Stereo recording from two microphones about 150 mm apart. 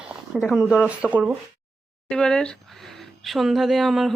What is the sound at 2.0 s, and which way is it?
Speech, 5° left (ahead or behind).